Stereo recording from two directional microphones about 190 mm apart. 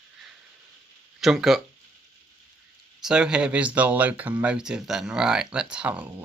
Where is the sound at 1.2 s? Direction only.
Centre (ahead or behind).